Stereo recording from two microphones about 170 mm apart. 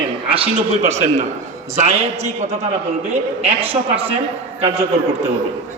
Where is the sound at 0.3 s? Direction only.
35° right (ahead or behind).